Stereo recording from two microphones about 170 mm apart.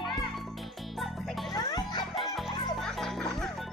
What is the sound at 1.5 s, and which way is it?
Music, 25° left (ahead or behind).